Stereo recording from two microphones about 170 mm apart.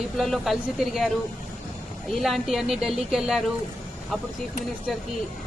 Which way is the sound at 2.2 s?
Centre (ahead or behind).